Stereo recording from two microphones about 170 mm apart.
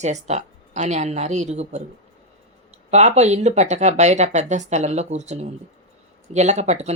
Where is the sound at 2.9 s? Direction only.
40° right (ahead or behind).